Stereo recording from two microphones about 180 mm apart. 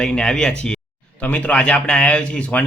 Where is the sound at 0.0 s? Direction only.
5° left (ahead or behind).